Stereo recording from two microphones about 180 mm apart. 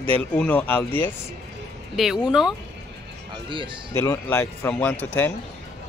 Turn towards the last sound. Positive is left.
turn(degrees=10)  # may be behind; listen again after turning